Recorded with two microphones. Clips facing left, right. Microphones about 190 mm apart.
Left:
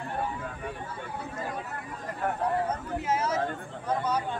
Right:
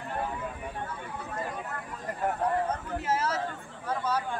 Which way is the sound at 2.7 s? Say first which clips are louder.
Left 1 dB; 10° left (ahead or behind).